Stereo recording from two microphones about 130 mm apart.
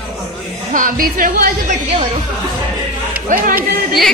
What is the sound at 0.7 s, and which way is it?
Speech, 90° right.